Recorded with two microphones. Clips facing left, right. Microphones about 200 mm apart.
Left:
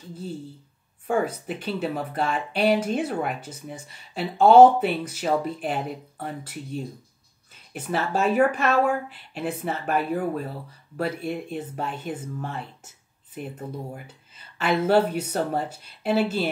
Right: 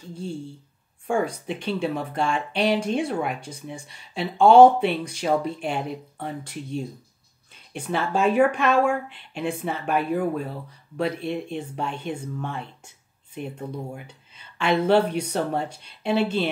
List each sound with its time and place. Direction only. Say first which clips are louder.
0.1 s speech: right 2 dB; 5° left (ahead or behind)